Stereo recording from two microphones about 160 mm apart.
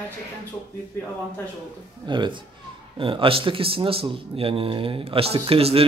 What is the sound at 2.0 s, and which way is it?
A man's voice, 30° right (ahead or behind).